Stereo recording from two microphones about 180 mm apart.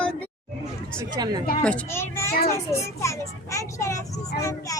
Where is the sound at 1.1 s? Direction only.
25° right (ahead or behind).